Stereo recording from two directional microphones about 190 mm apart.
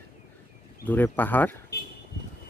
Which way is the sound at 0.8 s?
10° left (ahead or behind).